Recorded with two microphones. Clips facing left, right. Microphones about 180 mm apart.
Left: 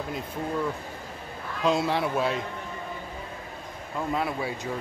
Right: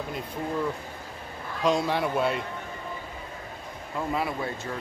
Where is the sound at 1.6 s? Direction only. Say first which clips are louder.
Even; centre (ahead or behind).